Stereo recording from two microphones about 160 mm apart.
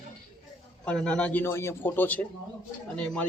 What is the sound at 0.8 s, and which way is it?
Speech, 5° left (ahead or behind).